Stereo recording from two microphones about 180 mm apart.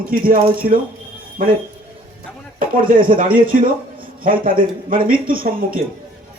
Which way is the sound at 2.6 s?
50° right (ahead or behind).